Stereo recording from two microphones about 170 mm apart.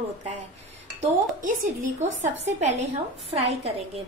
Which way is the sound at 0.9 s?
50° right (ahead or behind).